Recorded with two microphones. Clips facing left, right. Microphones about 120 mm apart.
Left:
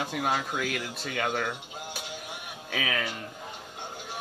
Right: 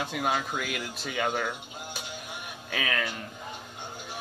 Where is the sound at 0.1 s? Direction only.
5° left (ahead or behind).